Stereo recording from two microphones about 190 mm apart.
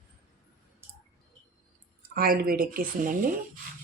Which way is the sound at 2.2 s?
50° right (ahead or behind).